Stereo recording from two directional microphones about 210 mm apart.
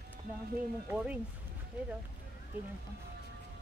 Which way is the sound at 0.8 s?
5° right (ahead or behind).